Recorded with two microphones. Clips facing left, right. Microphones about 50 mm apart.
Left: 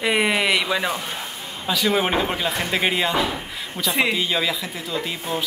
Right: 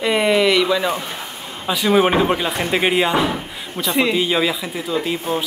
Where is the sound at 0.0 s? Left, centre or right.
Centre.